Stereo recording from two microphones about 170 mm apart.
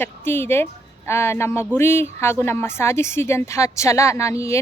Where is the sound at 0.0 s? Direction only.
15° left (ahead or behind).